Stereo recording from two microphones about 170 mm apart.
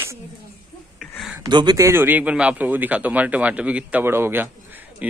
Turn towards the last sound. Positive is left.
turn(degrees=-10)  # may be behind; listen again after turning